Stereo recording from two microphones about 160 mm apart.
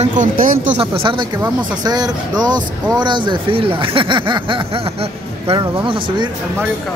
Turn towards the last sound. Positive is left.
turn(degrees=-30)  # may be behind; listen again after turning